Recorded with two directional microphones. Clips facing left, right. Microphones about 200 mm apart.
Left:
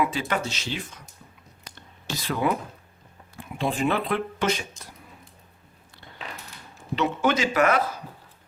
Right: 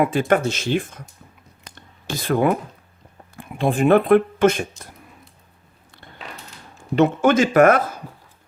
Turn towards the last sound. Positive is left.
turn(degrees=-50)  # may be behind; listen again after turning